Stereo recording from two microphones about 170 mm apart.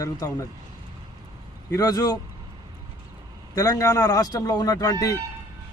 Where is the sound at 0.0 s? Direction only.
20° left (ahead or behind).